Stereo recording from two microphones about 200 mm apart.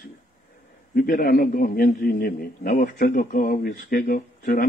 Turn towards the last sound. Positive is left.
turn(degrees=45)  # may be behind; listen again after turning